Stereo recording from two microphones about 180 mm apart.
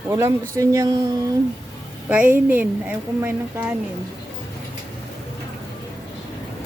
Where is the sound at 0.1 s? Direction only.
15° right (ahead or behind).